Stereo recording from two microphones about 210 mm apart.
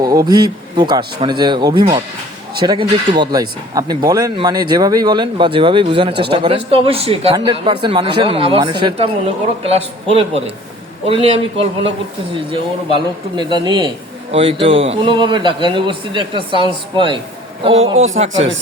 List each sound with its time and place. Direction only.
0.0 s speech: 15° right (ahead or behind)